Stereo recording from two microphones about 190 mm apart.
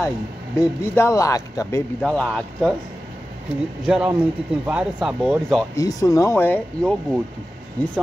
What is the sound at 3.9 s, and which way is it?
A man's voice, 5° right (ahead or behind).